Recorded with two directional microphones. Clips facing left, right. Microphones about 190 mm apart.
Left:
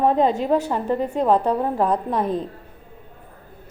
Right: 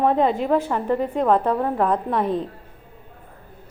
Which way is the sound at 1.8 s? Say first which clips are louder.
Even; 35° left (ahead or behind).